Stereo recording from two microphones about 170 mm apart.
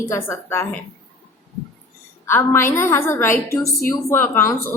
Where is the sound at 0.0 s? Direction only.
15° left (ahead or behind).